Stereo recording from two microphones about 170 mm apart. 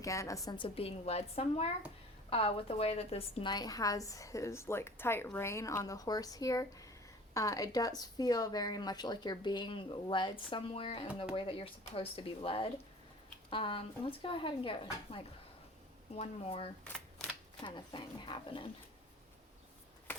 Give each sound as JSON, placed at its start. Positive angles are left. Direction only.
{"t": 0.0, "sound": "a woman's voice", "side_deg": 20}